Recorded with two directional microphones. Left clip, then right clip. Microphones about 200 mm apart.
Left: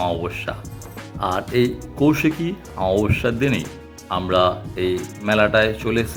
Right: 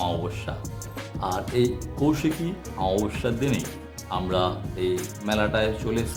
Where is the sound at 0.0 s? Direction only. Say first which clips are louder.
Left 5 dB; 15° left (ahead or behind).